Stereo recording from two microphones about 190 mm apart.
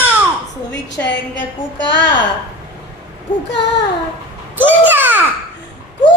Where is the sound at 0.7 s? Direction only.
65° left (ahead or behind).